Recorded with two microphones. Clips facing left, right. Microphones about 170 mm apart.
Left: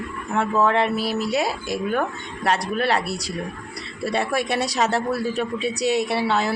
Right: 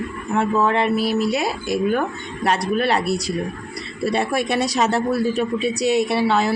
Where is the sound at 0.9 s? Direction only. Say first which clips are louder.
Right 3 dB; 15° right (ahead or behind).